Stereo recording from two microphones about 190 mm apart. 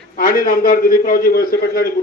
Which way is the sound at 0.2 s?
45° left (ahead or behind).